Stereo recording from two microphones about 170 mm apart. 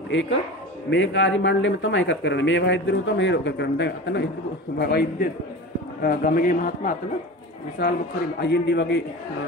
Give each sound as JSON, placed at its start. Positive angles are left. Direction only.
{"t": 0.1, "sound": "speech", "side_deg": 90}
{"t": 4.7, "sound": "a man's voice", "side_deg": 70}
{"t": 6.0, "sound": "a man's voice", "side_deg": 55}
{"t": 7.8, "sound": "a man's voice", "side_deg": 70}
{"t": 8.4, "sound": "speech", "side_deg": 85}